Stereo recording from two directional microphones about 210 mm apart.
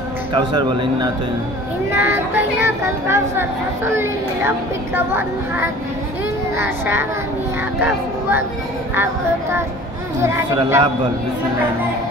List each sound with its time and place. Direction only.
0.3 s a man's voice: 25° right (ahead or behind)
10.2 s speech: 15° right (ahead or behind)